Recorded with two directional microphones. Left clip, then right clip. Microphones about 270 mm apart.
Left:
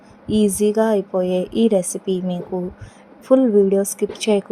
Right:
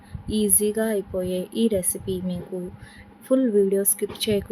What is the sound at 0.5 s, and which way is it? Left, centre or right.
Speech, centre.